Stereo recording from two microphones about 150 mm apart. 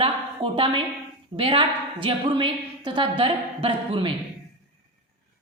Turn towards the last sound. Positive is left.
turn(degrees=-35)  # may be behind; listen again after turning